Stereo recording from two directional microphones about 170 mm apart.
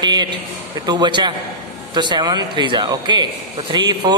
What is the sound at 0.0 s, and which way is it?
A man's voice, 25° right (ahead or behind).